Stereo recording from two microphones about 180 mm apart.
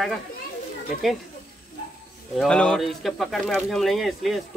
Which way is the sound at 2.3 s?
5° left (ahead or behind).